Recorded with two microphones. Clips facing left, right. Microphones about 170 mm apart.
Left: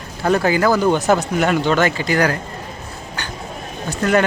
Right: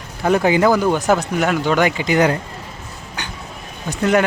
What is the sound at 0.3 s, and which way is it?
Speech, 15° right (ahead or behind).